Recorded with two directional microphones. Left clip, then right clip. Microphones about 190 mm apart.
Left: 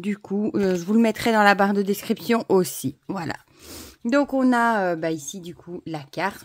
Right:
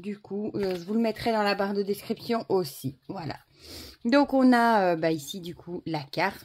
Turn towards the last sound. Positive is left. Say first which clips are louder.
# left 1 dB
turn(degrees=10)  # may be behind; listen again after turning